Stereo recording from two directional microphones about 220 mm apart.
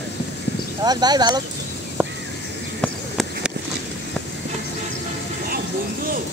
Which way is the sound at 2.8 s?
Centre (ahead or behind).